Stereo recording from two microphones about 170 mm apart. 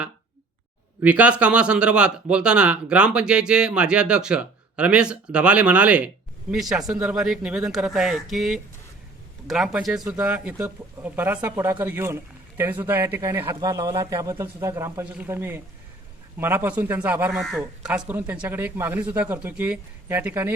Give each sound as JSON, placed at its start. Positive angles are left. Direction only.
{"t": 1.0, "sound": "a man's voice", "side_deg": -5}